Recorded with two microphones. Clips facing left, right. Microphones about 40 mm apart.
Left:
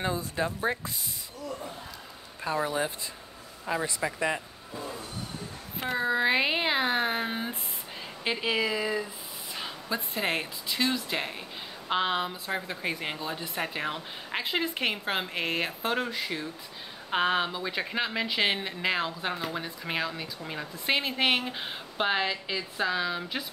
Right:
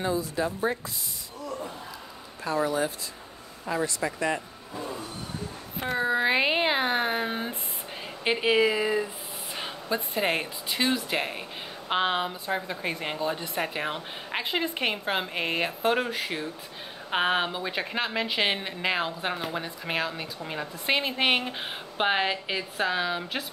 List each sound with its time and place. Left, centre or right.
0.0 s speech: left
2.4 s speech: centre
5.9 s speech: centre
8.2 s speech: centre
12.4 s speech: centre